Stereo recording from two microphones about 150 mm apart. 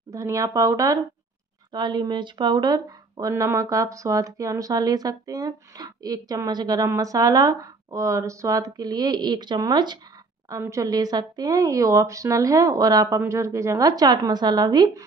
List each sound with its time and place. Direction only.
0.1 s speech: 20° right (ahead or behind)